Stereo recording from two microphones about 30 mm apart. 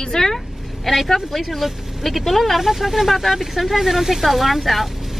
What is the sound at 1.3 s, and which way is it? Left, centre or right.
Speech, centre.